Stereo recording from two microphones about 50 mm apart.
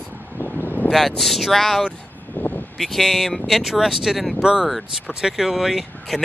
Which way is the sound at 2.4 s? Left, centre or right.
Left.